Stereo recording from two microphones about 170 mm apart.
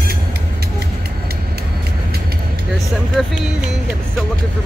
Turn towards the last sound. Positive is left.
turn(degrees=0)  # may be behind; listen again after turning